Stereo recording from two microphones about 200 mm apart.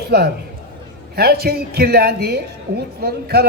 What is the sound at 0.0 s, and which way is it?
A man's voice, 55° right (ahead or behind).